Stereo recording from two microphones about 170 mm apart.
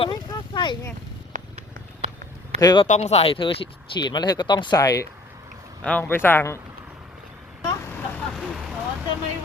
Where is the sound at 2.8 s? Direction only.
45° left (ahead or behind); by 5.0 s 20° left (ahead or behind).